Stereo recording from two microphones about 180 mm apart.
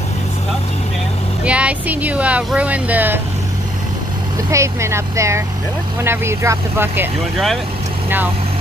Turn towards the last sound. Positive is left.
turn(degrees=0)  # may be behind; listen again after turning